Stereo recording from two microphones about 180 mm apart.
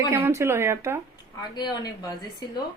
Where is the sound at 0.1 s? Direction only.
15° right (ahead or behind).